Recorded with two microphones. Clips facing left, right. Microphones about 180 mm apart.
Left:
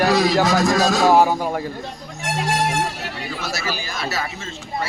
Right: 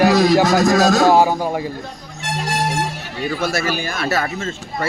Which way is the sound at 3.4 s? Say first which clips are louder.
Right 6 dB; 55° right (ahead or behind).